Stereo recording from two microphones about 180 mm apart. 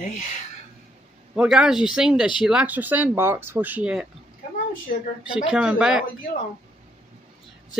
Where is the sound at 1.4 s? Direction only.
5° right (ahead or behind).